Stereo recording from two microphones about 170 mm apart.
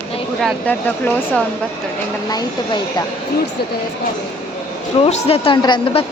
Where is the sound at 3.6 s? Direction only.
70° left (ahead or behind).